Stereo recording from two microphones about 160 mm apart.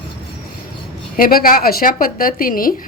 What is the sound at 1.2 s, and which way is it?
A woman's voice, 65° left (ahead or behind).